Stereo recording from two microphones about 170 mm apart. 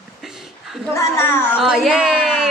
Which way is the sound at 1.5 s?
5° right (ahead or behind).